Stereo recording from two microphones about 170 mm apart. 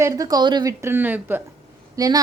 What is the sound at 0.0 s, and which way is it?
Speech, 20° right (ahead or behind).